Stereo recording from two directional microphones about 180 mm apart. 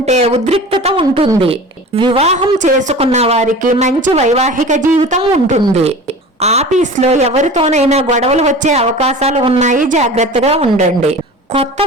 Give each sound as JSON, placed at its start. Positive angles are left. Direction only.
{"t": 0.0, "sound": "a woman's voice", "side_deg": -35}